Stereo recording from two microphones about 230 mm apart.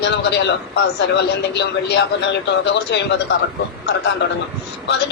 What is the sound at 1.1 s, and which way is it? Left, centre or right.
A man's voice, left.